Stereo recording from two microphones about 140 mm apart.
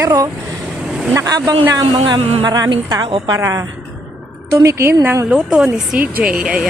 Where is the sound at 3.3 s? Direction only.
20° right (ahead or behind).